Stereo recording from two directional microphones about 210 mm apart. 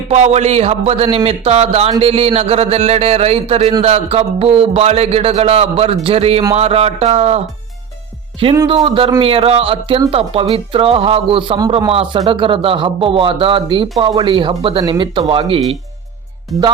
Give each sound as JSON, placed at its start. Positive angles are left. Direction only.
{"t": 0.1, "sound": "a man's voice", "side_deg": -30}
{"t": 8.5, "sound": "speech", "side_deg": -25}